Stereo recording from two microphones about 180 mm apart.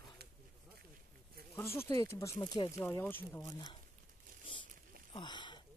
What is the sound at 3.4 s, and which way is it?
Speech, 25° left (ahead or behind).